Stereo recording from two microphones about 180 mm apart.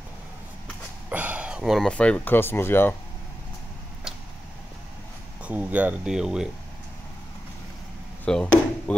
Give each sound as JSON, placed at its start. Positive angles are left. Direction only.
{"t": 1.1, "sound": "speech", "side_deg": -10}
{"t": 5.4, "sound": "speech", "side_deg": -10}
{"t": 8.3, "sound": "speech", "side_deg": 5}